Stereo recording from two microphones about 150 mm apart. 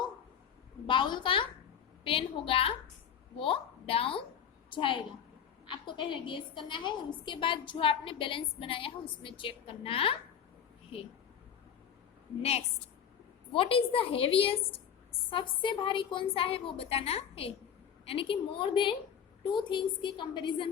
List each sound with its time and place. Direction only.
0.9 s a woman's voice: 30° left (ahead or behind)
12.4 s a woman's voice: 45° left (ahead or behind)